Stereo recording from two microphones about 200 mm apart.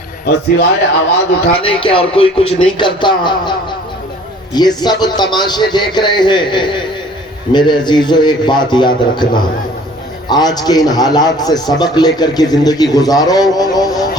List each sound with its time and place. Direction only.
0.3 s speech: 55° left (ahead or behind)
1.6 s a man's voice: 25° left (ahead or behind)
4.5 s a man's voice: 20° left (ahead or behind)